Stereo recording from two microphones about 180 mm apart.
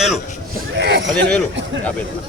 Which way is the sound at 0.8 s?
70° right (ahead or behind).